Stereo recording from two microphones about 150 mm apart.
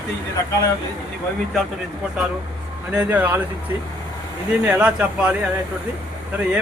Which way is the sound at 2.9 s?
10° right (ahead or behind).